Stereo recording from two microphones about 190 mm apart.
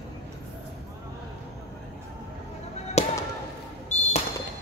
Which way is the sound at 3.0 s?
35° left (ahead or behind).